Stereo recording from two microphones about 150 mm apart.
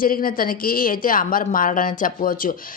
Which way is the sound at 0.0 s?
70° left (ahead or behind).